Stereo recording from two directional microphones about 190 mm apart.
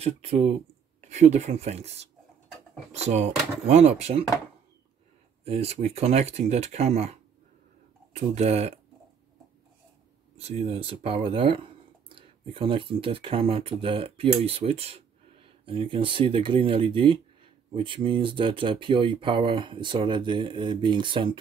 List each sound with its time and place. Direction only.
0.0 s speech: 30° right (ahead or behind)
5.4 s speech: 30° right (ahead or behind)
10.3 s speech: 30° right (ahead or behind)